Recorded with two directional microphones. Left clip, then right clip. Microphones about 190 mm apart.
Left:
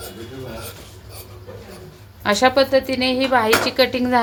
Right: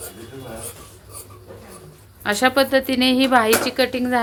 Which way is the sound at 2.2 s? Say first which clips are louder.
Left 2 dB; centre (ahead or behind).